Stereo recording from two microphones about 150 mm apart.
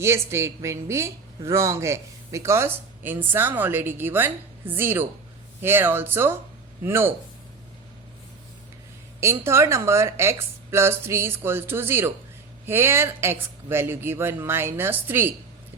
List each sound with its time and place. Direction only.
0.0 s a woman's voice: 15° right (ahead or behind)
9.2 s a woman's voice: 20° right (ahead or behind)